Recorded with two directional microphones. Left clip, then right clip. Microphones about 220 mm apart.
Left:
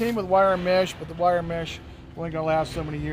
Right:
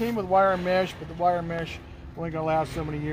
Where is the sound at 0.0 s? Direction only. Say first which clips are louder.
Left 2 dB; 25° left (ahead or behind).